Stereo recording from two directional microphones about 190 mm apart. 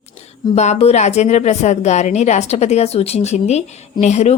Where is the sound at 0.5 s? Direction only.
35° left (ahead or behind).